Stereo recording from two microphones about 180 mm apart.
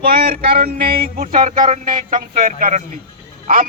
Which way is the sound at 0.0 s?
55° right (ahead or behind).